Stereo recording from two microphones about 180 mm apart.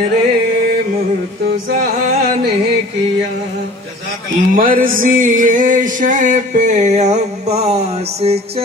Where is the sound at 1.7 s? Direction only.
55° right (ahead or behind).